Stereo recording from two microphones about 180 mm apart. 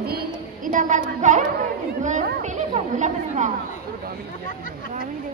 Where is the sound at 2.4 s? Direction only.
40° right (ahead or behind).